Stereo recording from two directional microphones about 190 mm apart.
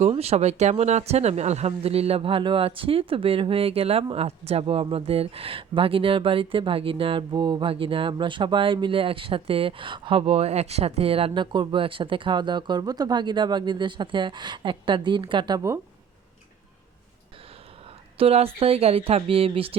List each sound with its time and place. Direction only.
0.0 s speech: 30° right (ahead or behind)
18.2 s speech: 30° right (ahead or behind)